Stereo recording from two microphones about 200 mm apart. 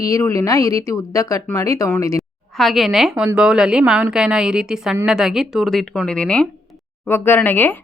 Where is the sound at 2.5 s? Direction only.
Centre (ahead or behind).